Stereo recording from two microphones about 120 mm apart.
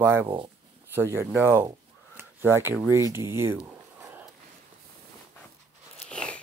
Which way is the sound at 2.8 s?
25° right (ahead or behind).